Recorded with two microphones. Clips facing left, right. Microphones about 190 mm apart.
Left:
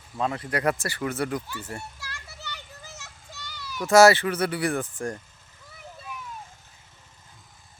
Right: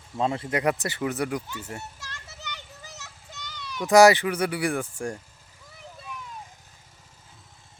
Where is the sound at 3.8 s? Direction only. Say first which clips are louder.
Even; 15° right (ahead or behind).